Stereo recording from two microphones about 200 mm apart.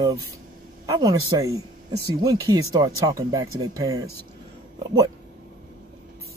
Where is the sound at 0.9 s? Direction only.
20° right (ahead or behind).